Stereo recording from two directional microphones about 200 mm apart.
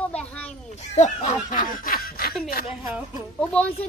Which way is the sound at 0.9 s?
35° left (ahead or behind).